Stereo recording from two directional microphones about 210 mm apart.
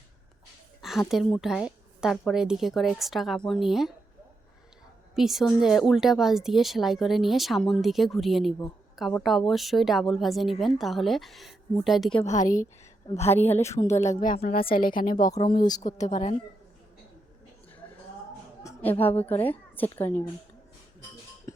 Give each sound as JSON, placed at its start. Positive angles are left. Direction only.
{"t": 0.8, "sound": "a woman's voice", "side_deg": 0}
{"t": 5.1, "sound": "a woman's voice", "side_deg": 0}
{"t": 12.2, "sound": "a woman's voice", "side_deg": 35}
{"t": 13.5, "sound": "a woman's voice", "side_deg": 15}
{"t": 13.8, "sound": "a woman's voice", "side_deg": 35}
{"t": 15.3, "sound": "speech", "side_deg": 20}
{"t": 15.8, "sound": "a woman's voice", "side_deg": 35}
{"t": 18.6, "sound": "a woman's voice", "side_deg": 10}